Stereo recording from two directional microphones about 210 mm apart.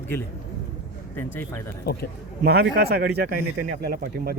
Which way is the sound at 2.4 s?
50° right (ahead or behind).